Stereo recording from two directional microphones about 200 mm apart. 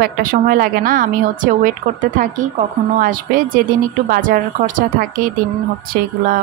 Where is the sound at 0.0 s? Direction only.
45° right (ahead or behind).